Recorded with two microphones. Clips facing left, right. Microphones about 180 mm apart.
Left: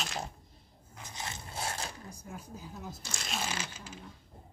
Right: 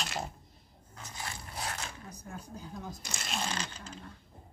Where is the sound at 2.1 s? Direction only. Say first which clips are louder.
Even; 5° left (ahead or behind).